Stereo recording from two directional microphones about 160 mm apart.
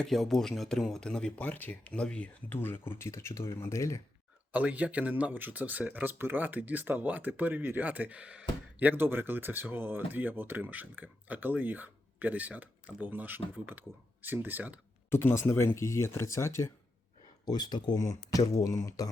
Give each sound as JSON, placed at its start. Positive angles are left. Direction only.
{"t": 0.0, "sound": "speech", "side_deg": 0}
{"t": 4.5, "sound": "speech", "side_deg": -10}
{"t": 15.1, "sound": "speech", "side_deg": 15}